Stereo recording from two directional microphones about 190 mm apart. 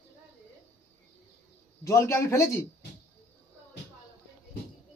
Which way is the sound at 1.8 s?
15° left (ahead or behind).